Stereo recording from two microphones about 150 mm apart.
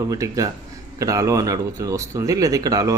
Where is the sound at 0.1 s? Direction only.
25° right (ahead or behind).